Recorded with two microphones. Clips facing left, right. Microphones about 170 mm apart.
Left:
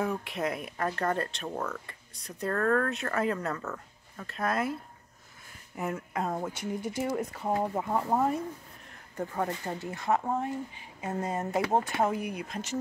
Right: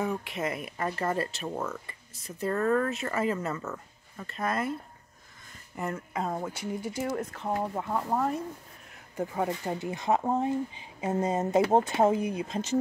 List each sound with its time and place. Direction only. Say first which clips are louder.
0.0 s speech: even; centre (ahead or behind)
5.8 s speech: even; 5° left (ahead or behind)
9.1 s speech: right 2 dB; 10° right (ahead or behind); by 12.6 s 25° right (ahead or behind)